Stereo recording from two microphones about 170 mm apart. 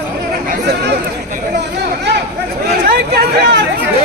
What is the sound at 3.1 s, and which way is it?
Chatter, 70° right (ahead or behind).